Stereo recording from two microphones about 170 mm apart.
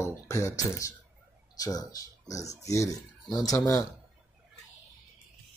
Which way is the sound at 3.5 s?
20° left (ahead or behind).